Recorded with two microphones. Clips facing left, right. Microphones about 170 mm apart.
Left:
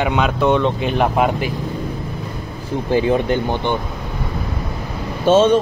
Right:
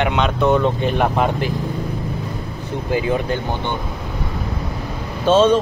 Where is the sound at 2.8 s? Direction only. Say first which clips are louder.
Left 4 dB; 30° left (ahead or behind).